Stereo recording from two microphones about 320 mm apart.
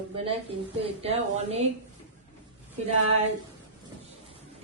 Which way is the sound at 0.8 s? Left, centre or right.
Centre.